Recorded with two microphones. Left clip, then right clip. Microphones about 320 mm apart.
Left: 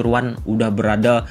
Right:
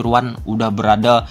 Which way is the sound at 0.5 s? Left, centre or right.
Centre.